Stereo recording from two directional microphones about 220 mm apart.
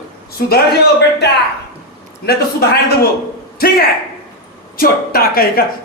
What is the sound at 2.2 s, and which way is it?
Speech, 45° left (ahead or behind).